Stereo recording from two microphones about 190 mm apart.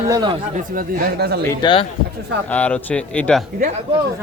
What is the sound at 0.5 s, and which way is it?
Speech, 55° right (ahead or behind).